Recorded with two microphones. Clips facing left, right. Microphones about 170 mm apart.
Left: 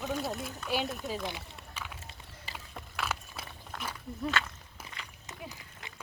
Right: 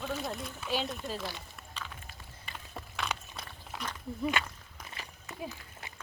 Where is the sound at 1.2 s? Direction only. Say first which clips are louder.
Left 2 dB; 15° left (ahead or behind).